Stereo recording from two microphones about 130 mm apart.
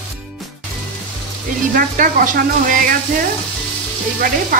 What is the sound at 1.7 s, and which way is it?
Speech, 90° right.